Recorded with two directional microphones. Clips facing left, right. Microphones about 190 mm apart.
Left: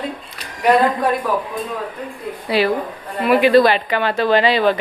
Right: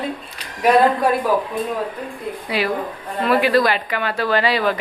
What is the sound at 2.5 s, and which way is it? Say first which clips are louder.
Speech: left 5 dB; 30° left (ahead or behind).